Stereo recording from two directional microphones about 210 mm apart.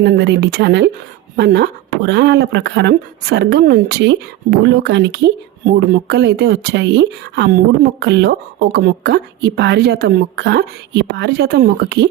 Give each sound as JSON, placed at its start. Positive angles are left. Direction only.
{"t": 0.0, "sound": "speech", "side_deg": -55}